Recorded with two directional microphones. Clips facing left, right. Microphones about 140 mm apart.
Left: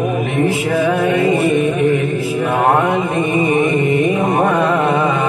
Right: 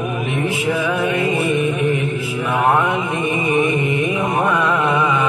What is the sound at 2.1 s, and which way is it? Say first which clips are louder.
Mantra: left 4 dB; 40° left (ahead or behind).